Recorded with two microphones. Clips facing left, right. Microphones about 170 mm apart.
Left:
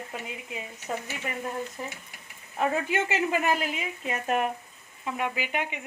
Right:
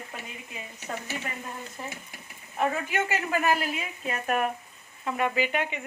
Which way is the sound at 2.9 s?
20° left (ahead or behind).